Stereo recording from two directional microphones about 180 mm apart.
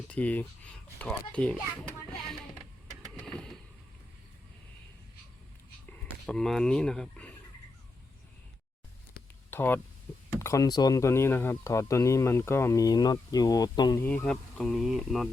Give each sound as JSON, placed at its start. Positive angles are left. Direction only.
{"t": 0.1, "sound": "speech", "side_deg": 10}
{"t": 3.2, "sound": "vehicle", "side_deg": 5}
{"t": 5.9, "sound": "speech", "side_deg": 0}
{"t": 9.5, "sound": "speech", "side_deg": 10}
{"t": 14.0, "sound": "speech", "side_deg": 10}